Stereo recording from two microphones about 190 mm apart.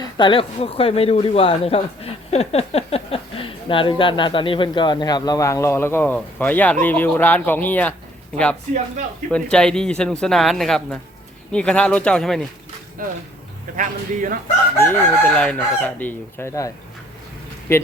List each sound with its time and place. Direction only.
0.0 s speech: 25° left (ahead or behind); by 7.9 s 10° left (ahead or behind)
9.3 s a man's voice: 5° left (ahead or behind)
13.0 s speech: 45° right (ahead or behind)
14.8 s chicken: 10° left (ahead or behind)